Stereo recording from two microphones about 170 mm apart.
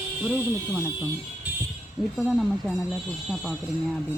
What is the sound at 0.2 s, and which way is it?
Speech, 10° right (ahead or behind).